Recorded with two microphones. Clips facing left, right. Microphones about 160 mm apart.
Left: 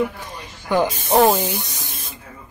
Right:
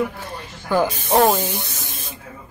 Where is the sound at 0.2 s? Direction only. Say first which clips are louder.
Right 2 dB; 15° left (ahead or behind).